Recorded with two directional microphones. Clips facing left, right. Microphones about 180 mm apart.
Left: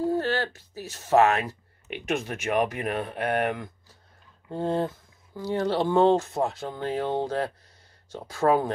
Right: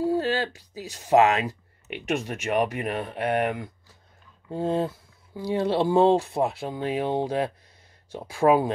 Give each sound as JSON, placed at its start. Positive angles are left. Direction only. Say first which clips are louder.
{"t": 0.0, "sound": "speech", "louder": "right 1 dB", "side_deg": -15}
{"t": 1.9, "sound": "speech", "louder": "right 1 dB", "side_deg": 0}